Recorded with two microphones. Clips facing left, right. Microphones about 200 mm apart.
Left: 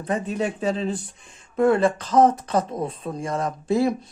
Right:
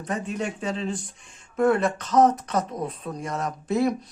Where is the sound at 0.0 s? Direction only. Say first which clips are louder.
Left 4 dB; 35° left (ahead or behind).